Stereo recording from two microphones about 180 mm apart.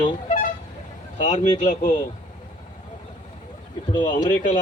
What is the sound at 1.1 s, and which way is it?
Speech, 40° left (ahead or behind).